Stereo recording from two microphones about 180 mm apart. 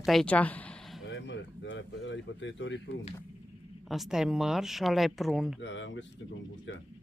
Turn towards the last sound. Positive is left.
turn(degrees=90)